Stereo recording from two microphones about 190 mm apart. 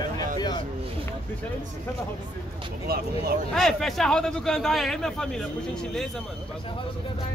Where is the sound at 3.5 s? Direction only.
Centre (ahead or behind).